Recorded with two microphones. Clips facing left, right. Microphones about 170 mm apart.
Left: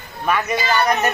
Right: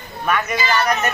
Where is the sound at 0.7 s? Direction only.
20° left (ahead or behind).